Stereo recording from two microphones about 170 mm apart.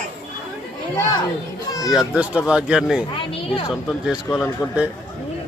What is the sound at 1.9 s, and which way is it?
Speech, 5° right (ahead or behind).